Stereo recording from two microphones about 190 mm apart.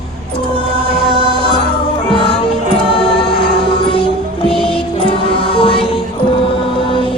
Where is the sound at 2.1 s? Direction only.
25° left (ahead or behind).